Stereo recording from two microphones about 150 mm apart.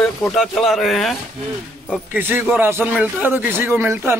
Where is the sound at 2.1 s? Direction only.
15° right (ahead or behind).